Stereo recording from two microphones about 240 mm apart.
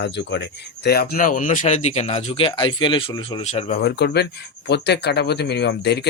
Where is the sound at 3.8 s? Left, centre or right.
Left.